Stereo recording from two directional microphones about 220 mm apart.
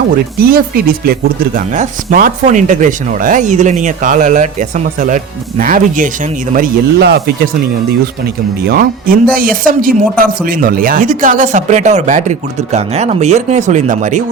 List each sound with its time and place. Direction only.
0.3 s speech: 40° right (ahead or behind)
8.7 s speech: 40° right (ahead or behind)